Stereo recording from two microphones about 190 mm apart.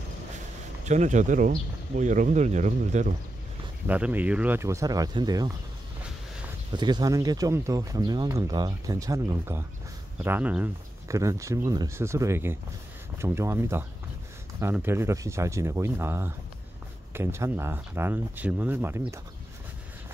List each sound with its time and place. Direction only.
0.8 s speech: 40° right (ahead or behind)
3.8 s speech: 10° right (ahead or behind)
6.7 s speech: 20° right (ahead or behind)